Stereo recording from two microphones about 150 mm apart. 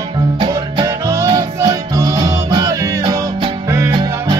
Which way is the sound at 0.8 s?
20° right (ahead or behind).